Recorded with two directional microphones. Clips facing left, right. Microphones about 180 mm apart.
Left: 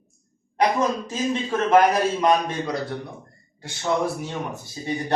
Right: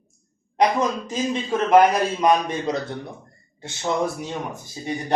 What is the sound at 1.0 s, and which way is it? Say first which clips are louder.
Speech: even; 15° right (ahead or behind).